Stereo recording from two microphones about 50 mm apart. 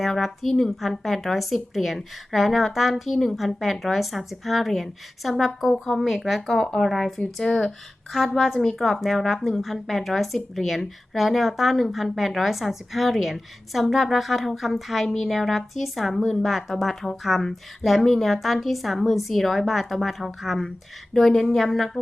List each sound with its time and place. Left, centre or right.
0.0 s a woman's voice: centre
7.4 s speech: centre
8.1 s a woman's voice: centre